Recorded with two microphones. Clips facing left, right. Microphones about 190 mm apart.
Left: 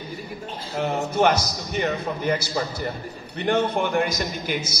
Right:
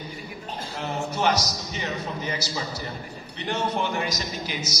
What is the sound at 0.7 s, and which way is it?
A man's voice, 55° left (ahead or behind).